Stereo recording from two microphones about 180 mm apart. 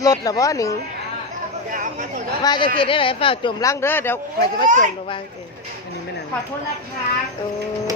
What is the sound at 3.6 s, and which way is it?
Speech, 15° left (ahead or behind).